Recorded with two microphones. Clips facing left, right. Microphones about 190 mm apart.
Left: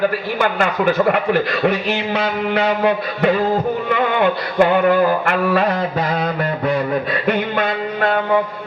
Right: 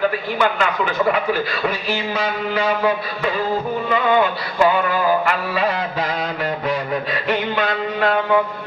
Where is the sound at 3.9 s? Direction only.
65° left (ahead or behind).